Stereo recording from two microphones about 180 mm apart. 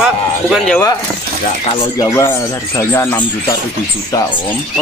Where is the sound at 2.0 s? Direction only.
15° left (ahead or behind).